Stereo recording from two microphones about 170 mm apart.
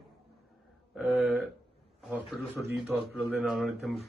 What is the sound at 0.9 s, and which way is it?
Speech, centre (ahead or behind).